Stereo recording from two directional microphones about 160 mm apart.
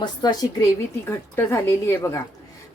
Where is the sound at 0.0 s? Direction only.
25° left (ahead or behind).